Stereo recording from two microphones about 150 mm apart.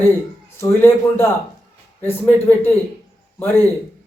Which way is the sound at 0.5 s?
15° left (ahead or behind).